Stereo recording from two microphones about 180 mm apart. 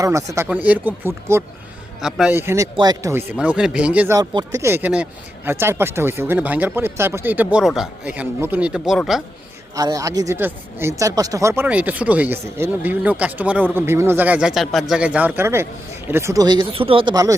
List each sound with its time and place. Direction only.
0.0 s speech: 20° right (ahead or behind)
2.0 s speech: 5° right (ahead or behind)
4.2 s speech: 20° right (ahead or behind); by 9.2 s centre (ahead or behind)
9.7 s speech: 20° right (ahead or behind)